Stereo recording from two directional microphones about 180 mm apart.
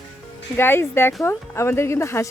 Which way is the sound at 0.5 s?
10° left (ahead or behind).